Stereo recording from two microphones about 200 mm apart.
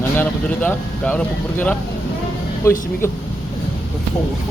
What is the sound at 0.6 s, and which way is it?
Speech, 10° left (ahead or behind).